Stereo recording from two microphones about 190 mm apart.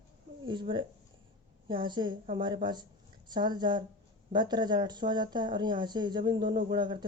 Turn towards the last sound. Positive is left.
turn(degrees=-25)  # may be behind; listen again after turning